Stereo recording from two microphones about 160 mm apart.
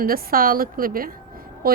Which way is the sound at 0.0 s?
65° right (ahead or behind).